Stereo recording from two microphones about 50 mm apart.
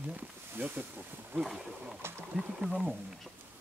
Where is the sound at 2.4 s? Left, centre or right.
Centre.